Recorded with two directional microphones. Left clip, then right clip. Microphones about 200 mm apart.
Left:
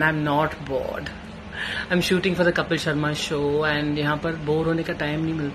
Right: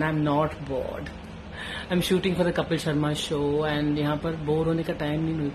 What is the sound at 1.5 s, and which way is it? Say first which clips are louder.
Speech: left 5 dB; 15° right (ahead or behind).